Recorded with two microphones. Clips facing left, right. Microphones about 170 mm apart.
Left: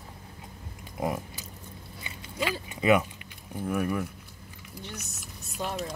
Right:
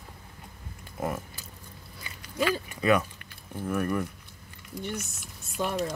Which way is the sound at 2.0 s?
20° left (ahead or behind).